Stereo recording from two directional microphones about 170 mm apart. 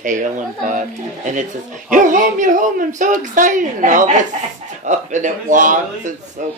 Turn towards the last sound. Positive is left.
turn(degrees=-45)  # may be behind; listen again after turning